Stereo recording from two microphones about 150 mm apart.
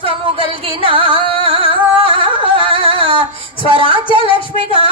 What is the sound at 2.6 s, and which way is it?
Female singing, 35° right (ahead or behind).